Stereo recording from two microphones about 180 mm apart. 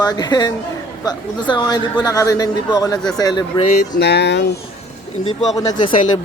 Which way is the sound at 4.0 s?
65° left (ahead or behind).